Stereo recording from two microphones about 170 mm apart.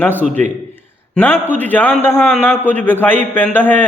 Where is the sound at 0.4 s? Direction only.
45° right (ahead or behind).